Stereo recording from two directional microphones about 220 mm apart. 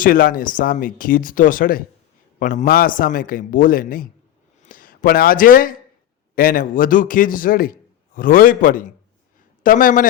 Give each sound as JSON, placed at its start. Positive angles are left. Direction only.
{"t": 0.0, "sound": "speech", "side_deg": 40}